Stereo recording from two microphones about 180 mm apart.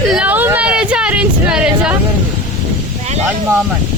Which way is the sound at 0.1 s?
10° right (ahead or behind).